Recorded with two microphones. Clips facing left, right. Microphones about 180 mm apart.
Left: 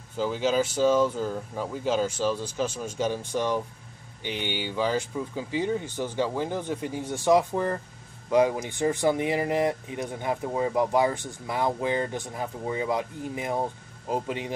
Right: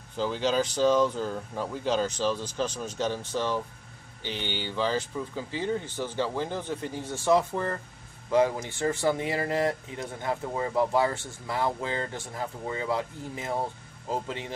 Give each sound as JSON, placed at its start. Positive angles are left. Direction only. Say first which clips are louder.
{"t": 0.2, "sound": "speech", "louder": "left 2 dB", "side_deg": 10}